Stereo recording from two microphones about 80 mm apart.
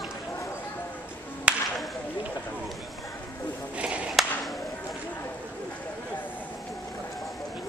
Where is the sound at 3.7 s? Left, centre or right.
Centre.